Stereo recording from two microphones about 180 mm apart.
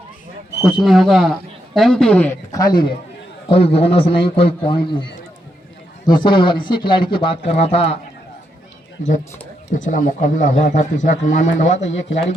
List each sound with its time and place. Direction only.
0.6 s speech: centre (ahead or behind); by 2.9 s 25° left (ahead or behind)
3.5 s a man's voice: 35° left (ahead or behind)
6.1 s speech: 25° left (ahead or behind)
9.6 s a man's voice: 45° left (ahead or behind)
11.9 s speech: 90° left